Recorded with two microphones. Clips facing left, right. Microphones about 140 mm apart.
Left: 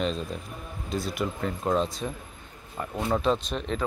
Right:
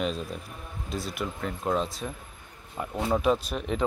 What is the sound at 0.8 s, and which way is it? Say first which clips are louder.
Speech: left 3 dB; centre (ahead or behind).